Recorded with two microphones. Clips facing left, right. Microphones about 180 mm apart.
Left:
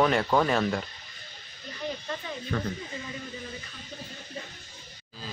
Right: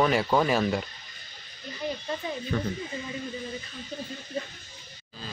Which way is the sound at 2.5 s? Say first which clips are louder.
Right 1 dB; centre (ahead or behind).